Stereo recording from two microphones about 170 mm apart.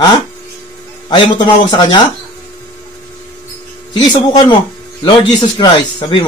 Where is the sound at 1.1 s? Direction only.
25° left (ahead or behind).